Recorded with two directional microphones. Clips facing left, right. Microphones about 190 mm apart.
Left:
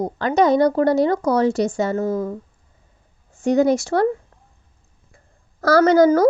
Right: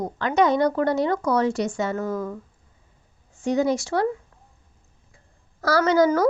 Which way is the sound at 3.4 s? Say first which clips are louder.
Left 5 dB; 50° left (ahead or behind).